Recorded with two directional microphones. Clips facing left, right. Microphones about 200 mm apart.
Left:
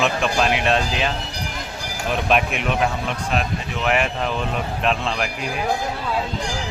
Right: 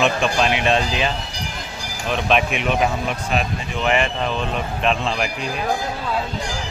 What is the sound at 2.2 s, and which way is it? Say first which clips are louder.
Speech: right 2 dB; centre (ahead or behind).